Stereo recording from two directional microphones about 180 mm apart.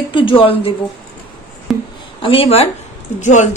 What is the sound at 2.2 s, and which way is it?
A woman's voice, 30° left (ahead or behind).